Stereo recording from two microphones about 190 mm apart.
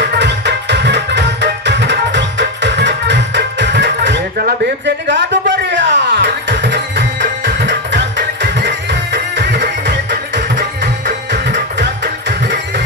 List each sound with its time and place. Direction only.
0.0 s music: 60° right (ahead or behind)
11.1 s music: 40° right (ahead or behind)
11.8 s music: 60° right (ahead or behind)